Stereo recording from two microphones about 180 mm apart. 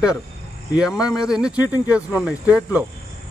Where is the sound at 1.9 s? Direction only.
5° right (ahead or behind).